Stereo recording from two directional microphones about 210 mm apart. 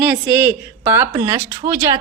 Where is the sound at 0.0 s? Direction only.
5° right (ahead or behind).